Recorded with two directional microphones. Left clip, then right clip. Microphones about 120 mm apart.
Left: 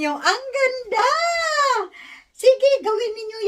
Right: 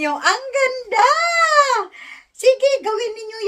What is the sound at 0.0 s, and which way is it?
A child's voice, 30° left (ahead or behind).